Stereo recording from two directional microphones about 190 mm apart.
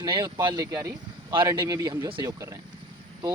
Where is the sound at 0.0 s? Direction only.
25° right (ahead or behind).